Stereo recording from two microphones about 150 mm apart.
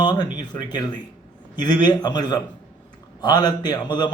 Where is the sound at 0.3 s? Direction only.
30° left (ahead or behind).